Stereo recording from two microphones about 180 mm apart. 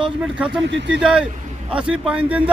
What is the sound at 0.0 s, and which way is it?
Speech, 5° right (ahead or behind).